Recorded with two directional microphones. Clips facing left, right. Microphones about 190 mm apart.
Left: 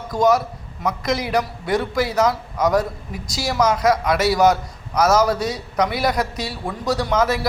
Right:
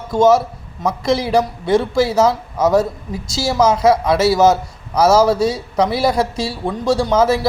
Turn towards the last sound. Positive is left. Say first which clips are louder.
# right 5 dB
turn(degrees=-30)  # may be behind; listen again after turning